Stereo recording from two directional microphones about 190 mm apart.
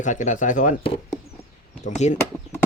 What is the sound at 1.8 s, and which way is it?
Speech, 40° left (ahead or behind).